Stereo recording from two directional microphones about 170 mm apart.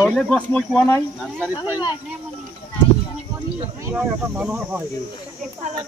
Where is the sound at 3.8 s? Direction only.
10° right (ahead or behind).